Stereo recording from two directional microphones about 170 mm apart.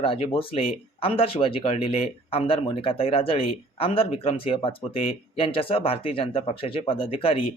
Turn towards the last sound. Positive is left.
turn(degrees=35)  # may be behind; listen again after turning